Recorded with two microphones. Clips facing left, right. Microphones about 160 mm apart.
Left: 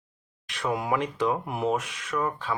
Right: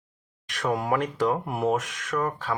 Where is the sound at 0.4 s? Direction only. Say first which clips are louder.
Right 2 dB; 40° right (ahead or behind).